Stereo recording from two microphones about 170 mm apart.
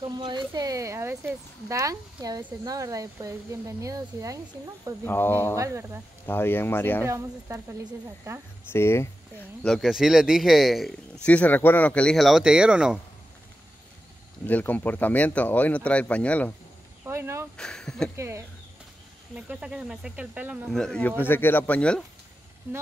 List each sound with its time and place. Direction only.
0.0 s speech: 25° right (ahead or behind)
5.0 s speech: 10° left (ahead or behind)
5.6 s speech: 15° right (ahead or behind)
6.2 s speech: 10° left (ahead or behind)
7.1 s speech: 15° right (ahead or behind)
8.7 s speech: 15° left (ahead or behind); by 13.0 s 5° right (ahead or behind)
14.4 s speech: 10° left (ahead or behind)
17.0 s speech: 15° right (ahead or behind)
17.6 s speech: 5° left (ahead or behind)
18.1 s speech: 15° right (ahead or behind)
20.7 s speech: 5° left (ahead or behind)